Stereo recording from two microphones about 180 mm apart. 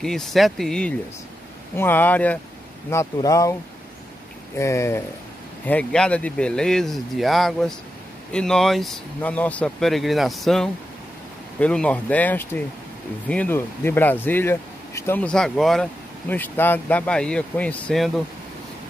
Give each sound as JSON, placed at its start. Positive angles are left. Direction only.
{"t": 0.0, "sound": "speech", "side_deg": 0}
{"t": 4.6, "sound": "speech", "side_deg": 15}